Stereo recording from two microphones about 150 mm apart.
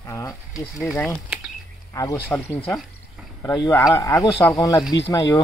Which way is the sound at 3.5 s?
25° left (ahead or behind).